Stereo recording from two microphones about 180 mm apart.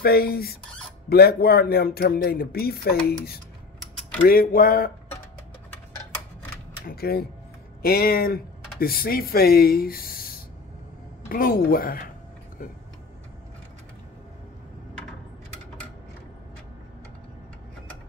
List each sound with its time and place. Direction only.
0.0 s a woman's voice: 60° left (ahead or behind)
6.9 s a woman's voice: 60° left (ahead or behind)